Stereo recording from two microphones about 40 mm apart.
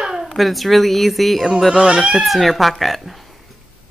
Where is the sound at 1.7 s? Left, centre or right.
Centre.